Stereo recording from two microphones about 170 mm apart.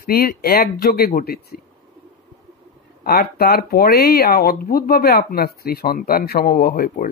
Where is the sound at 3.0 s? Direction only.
65° left (ahead or behind).